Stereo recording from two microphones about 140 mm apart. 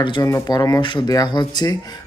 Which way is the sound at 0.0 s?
30° left (ahead or behind).